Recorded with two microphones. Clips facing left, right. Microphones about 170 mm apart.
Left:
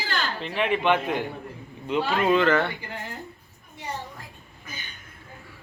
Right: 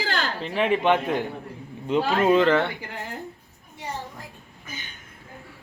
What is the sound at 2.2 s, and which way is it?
Speech, 35° right (ahead or behind).